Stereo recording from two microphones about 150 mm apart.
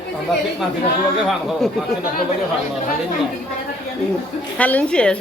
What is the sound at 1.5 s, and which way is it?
Speech, centre (ahead or behind).